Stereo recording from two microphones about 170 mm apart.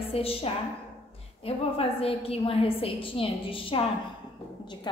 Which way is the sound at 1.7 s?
35° left (ahead or behind).